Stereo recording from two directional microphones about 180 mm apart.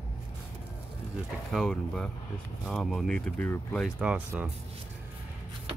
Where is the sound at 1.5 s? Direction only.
5° left (ahead or behind).